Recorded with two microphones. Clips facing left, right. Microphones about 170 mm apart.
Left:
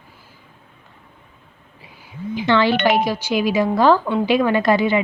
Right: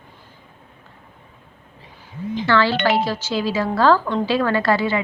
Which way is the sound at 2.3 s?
15° left (ahead or behind).